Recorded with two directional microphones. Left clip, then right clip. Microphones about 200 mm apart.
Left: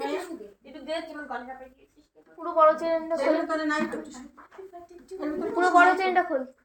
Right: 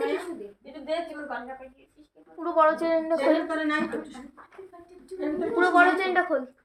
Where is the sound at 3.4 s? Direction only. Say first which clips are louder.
Even; 15° right (ahead or behind).